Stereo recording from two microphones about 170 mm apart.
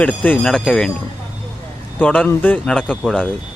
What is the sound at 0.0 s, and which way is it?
Speech, 10° left (ahead or behind).